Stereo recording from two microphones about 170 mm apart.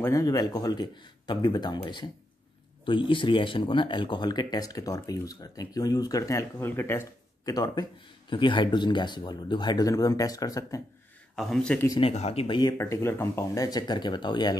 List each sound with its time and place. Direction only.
0.0 s speech: 20° left (ahead or behind)
11.3 s a man's voice: 5° left (ahead or behind)
12.0 s speech: 40° left (ahead or behind)